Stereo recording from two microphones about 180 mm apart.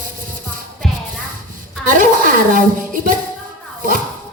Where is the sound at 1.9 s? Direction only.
50° right (ahead or behind).